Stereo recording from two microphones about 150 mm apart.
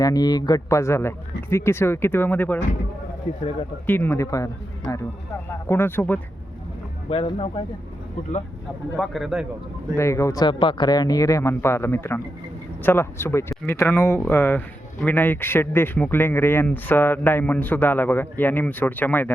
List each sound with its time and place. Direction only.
0.0 s speech: 25° left (ahead or behind)
3.8 s speech: 15° left (ahead or behind)
5.6 s speech: 15° left (ahead or behind)
7.1 s speech: 35° left (ahead or behind)
9.0 s speech: centre (ahead or behind)
9.9 s speech: 20° left (ahead or behind)